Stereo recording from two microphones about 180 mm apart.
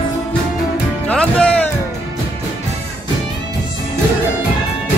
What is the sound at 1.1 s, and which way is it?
Music, 5° left (ahead or behind).